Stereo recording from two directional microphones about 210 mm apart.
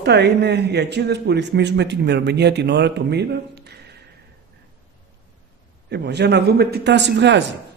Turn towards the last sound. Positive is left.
turn(degrees=-55)  # may be behind; listen again after turning